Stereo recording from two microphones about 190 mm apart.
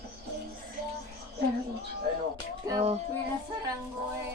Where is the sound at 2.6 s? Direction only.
20° right (ahead or behind).